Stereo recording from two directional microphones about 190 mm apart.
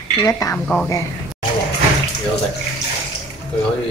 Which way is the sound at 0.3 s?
15° left (ahead or behind).